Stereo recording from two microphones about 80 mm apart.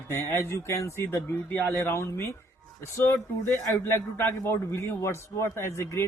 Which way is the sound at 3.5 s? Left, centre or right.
Left.